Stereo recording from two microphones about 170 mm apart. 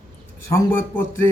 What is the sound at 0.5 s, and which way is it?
Speech, 15° left (ahead or behind).